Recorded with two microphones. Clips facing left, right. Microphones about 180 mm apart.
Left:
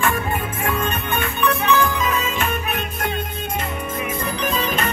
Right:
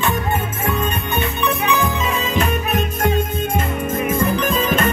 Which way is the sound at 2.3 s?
40° right (ahead or behind).